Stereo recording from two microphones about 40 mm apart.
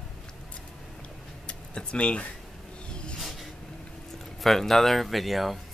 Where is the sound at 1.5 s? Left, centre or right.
Left.